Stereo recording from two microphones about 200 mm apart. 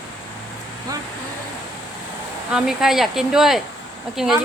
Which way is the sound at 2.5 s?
Centre (ahead or behind).